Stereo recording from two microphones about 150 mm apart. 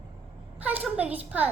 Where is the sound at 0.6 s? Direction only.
10° right (ahead or behind).